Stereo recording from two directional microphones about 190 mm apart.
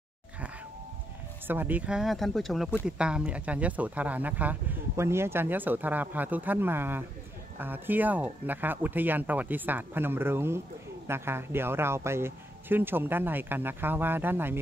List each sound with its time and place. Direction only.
1.5 s speech: 10° right (ahead or behind)